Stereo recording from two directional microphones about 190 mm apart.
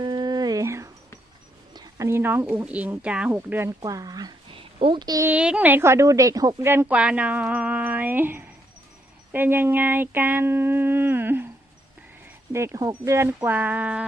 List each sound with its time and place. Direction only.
0.0 s a sound: 25° right (ahead or behind)
1.7 s speech: 15° right (ahead or behind)
12.5 s speech: 15° right (ahead or behind)